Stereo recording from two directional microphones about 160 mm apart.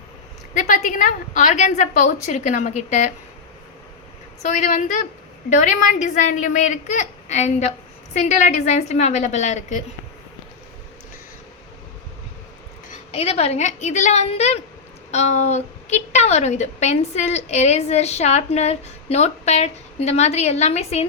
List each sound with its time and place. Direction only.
0.5 s a woman's voice: 50° left (ahead or behind)
4.4 s a woman's voice: 50° left (ahead or behind)
13.1 s a woman's voice: 35° left (ahead or behind)